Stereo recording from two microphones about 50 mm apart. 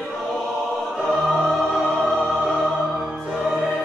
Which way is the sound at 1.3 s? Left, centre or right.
Centre.